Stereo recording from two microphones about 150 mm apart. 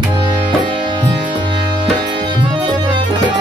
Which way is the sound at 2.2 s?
30° right (ahead or behind).